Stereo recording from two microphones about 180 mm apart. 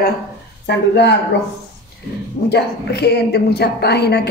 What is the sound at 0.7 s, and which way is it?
Speech, 70° left (ahead or behind).